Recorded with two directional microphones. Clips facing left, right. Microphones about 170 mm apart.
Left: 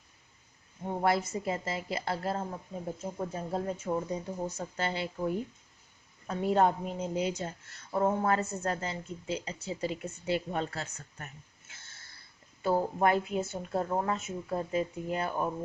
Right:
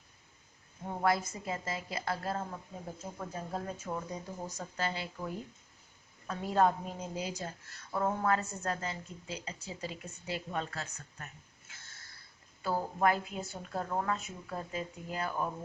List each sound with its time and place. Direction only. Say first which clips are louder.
0.9 s a woman's voice: left 2 dB; 25° left (ahead or behind)
11.7 s a sound: even; 25° left (ahead or behind)
12.6 s a woman's voice: left 3 dB; 25° left (ahead or behind)